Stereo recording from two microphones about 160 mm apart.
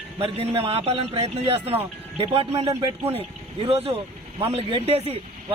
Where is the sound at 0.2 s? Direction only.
35° right (ahead or behind).